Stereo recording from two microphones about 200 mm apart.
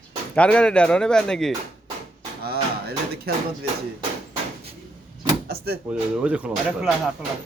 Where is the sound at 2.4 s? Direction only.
50° right (ahead or behind).